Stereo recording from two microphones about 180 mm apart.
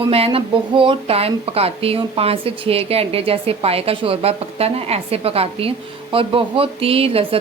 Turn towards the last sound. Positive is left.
turn(degrees=-30)  # may be behind; listen again after turning